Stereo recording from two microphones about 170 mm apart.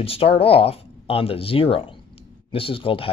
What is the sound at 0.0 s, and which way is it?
Speech, 35° left (ahead or behind).